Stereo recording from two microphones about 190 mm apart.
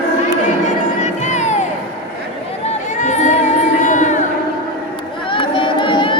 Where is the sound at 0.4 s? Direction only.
40° left (ahead or behind).